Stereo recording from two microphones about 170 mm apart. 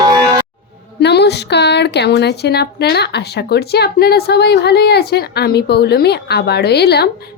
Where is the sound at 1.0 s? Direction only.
80° left.